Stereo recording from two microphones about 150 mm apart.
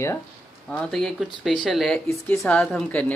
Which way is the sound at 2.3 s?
15° left (ahead or behind).